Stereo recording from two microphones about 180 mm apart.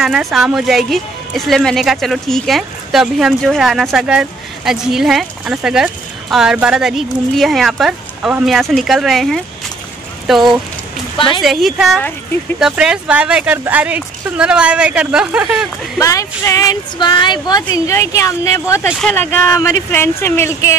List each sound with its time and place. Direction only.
0.0 s speech: centre (ahead or behind)
11.1 s a woman's voice: 30° left (ahead or behind)
11.4 s speech: centre (ahead or behind)
16.0 s speech: 15° left (ahead or behind)
18.9 s speech: centre (ahead or behind)
19.1 s speech: 15° left (ahead or behind)